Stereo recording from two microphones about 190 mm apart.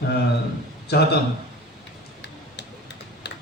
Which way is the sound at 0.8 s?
60° left (ahead or behind).